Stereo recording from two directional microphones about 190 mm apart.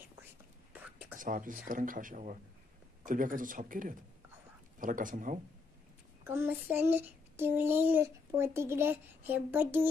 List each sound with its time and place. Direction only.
0.7 s whispering: 10° right (ahead or behind)
1.1 s speech: 45° right (ahead or behind)
6.2 s child singing: 10° right (ahead or behind)